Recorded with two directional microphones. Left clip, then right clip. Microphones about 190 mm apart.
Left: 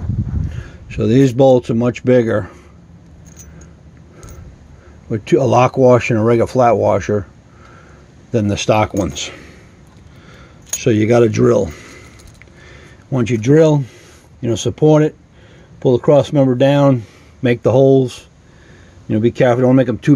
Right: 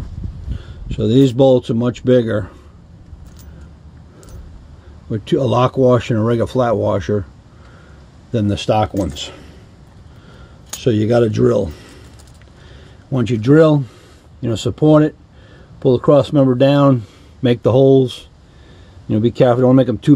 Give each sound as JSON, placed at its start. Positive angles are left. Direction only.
{"t": 0.6, "sound": "a sound", "side_deg": 15}
{"t": 1.6, "sound": "speech", "side_deg": 10}
{"t": 5.1, "sound": "speech", "side_deg": 10}
{"t": 8.3, "sound": "speech", "side_deg": 10}
{"t": 10.8, "sound": "speech", "side_deg": 15}
{"t": 13.1, "sound": "speech", "side_deg": 5}